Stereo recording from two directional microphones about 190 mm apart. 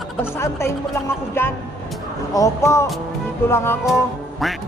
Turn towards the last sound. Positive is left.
turn(degrees=0)  # may be behind; listen again after turning